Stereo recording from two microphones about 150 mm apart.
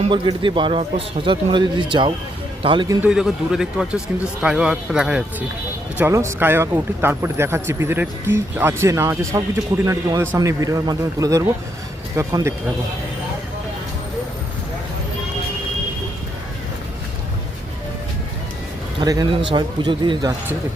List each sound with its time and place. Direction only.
0.0 s a man's voice: 35° right (ahead or behind)
3.0 s speech: 5° right (ahead or behind)
6.0 s speech: 20° right (ahead or behind)
18.9 s a man's voice: 25° right (ahead or behind)